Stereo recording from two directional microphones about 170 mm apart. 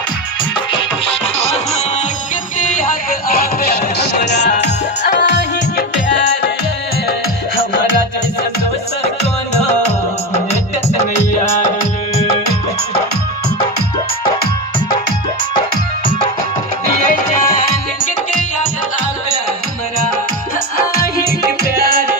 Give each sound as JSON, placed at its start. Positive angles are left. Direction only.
{"t": 2.6, "sound": "music", "side_deg": 55}